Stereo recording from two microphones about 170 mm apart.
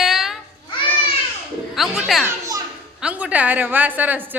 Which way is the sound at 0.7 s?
30° left (ahead or behind).